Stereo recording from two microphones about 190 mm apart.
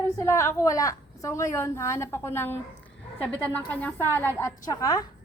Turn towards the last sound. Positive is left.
turn(degrees=20)  # may be behind; listen again after turning